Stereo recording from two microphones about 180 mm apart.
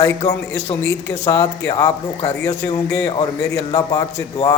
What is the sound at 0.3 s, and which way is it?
A man's voice, 15° left (ahead or behind).